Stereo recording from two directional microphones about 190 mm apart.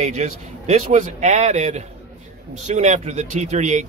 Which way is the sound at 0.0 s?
35° right (ahead or behind).